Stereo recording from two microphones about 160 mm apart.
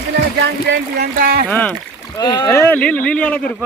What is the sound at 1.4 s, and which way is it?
Speech, 10° left (ahead or behind).